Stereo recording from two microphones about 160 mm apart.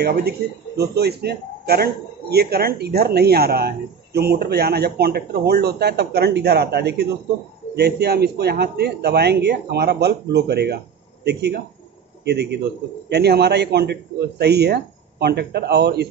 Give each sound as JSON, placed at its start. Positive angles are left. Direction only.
{"t": 0.0, "sound": "a man's voice", "side_deg": -85}